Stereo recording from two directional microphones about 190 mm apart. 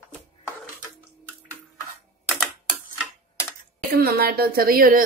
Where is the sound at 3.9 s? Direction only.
55° right (ahead or behind).